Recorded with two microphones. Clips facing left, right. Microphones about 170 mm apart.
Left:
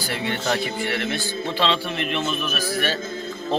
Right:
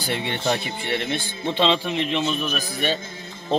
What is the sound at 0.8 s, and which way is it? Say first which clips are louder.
Speech: even; 20° right (ahead or behind).